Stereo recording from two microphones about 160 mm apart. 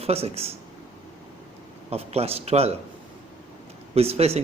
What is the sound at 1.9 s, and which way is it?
Speech, 40° right (ahead or behind).